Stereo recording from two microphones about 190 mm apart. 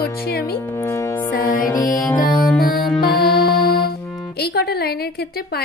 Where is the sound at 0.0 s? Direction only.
55° left (ahead or behind).